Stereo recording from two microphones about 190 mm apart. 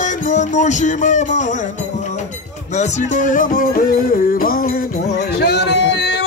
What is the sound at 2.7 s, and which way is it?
Music, 40° left (ahead or behind).